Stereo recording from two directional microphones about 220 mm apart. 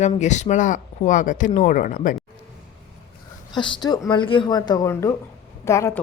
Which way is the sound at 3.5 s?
20° left (ahead or behind).